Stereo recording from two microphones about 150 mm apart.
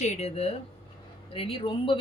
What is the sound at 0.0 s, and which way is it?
Speech, 50° left (ahead or behind).